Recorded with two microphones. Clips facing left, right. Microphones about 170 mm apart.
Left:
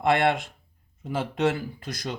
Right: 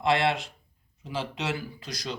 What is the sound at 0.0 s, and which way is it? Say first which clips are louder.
Speech: left 3 dB; 50° left (ahead or behind).